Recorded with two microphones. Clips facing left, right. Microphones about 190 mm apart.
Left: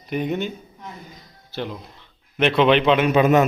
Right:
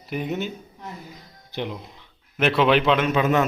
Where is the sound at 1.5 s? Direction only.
15° right (ahead or behind).